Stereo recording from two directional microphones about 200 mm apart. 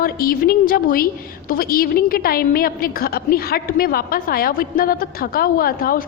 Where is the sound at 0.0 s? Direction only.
50° left (ahead or behind).